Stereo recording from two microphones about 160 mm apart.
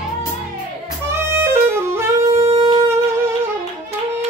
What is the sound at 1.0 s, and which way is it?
Saxophone, 15° right (ahead or behind).